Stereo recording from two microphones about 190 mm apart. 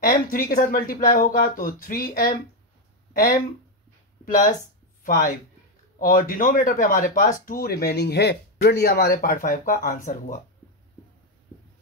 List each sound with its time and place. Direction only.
0.0 s speech: 50° left (ahead or behind)
3.1 s a sound: 50° left (ahead or behind)
5.0 s speech: 50° left (ahead or behind)